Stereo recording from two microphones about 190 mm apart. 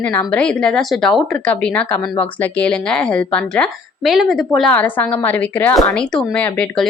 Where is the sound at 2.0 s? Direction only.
25° left (ahead or behind).